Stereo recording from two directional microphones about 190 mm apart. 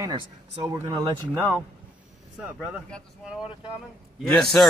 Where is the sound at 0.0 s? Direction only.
20° right (ahead or behind).